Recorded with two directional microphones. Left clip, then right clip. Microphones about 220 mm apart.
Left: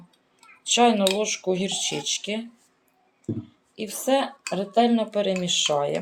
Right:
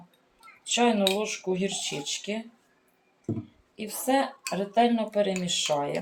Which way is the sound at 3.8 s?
40° left (ahead or behind).